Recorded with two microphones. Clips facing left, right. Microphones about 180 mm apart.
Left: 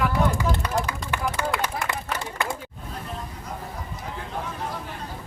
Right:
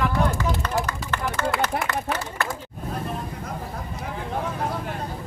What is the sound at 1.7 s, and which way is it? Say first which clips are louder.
Speech: right 4 dB; 65° right (ahead or behind).